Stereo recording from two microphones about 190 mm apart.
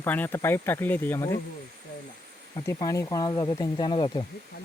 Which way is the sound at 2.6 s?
20° left (ahead or behind).